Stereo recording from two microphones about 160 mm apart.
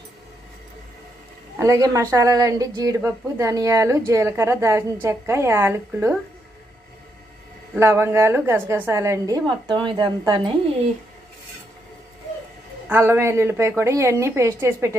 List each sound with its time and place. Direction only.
1.5 s a woman's voice: 20° right (ahead or behind)
7.8 s a woman's voice: 15° right (ahead or behind)
12.9 s a woman's voice: 15° right (ahead or behind)